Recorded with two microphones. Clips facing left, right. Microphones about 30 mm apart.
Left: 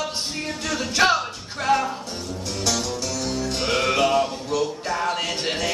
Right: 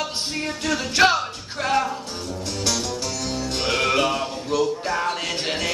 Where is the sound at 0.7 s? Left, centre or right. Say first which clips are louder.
Right 1 dB; centre.